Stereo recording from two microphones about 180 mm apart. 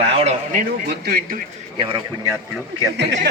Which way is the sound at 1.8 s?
25° right (ahead or behind).